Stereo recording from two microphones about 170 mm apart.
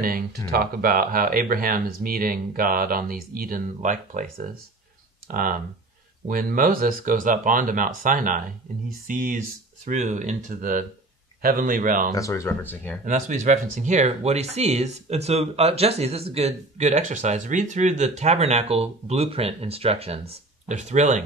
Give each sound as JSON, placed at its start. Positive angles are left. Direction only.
{"t": 0.0, "sound": "speech", "side_deg": -60}
{"t": 12.1, "sound": "speech", "side_deg": 20}
{"t": 13.0, "sound": "speech", "side_deg": -45}